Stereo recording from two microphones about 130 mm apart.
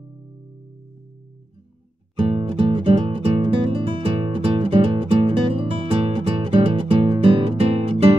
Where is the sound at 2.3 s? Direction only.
40° right (ahead or behind).